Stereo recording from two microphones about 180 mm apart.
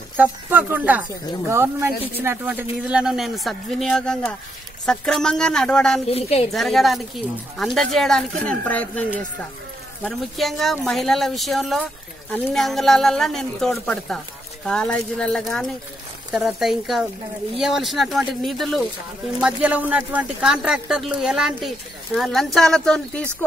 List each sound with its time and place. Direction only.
0.2 s speech: 10° right (ahead or behind)
6.0 s a woman's voice: 35° left (ahead or behind)
6.5 s speech: centre (ahead or behind)